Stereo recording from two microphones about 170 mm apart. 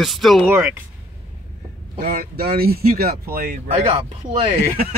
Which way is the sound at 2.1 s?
65° right (ahead or behind).